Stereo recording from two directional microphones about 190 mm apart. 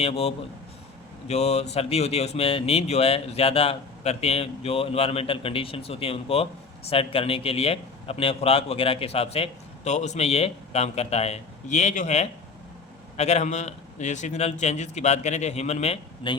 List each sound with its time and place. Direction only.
0.0 s a man's voice: 30° left (ahead or behind)